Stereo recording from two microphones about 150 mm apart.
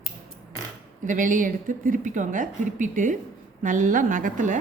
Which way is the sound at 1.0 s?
60° right (ahead or behind).